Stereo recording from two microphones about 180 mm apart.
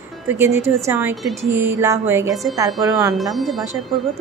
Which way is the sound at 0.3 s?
15° right (ahead or behind).